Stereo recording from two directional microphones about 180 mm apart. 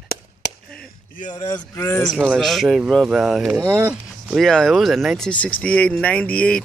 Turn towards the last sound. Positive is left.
turn(degrees=5)  # may be behind; listen again after turning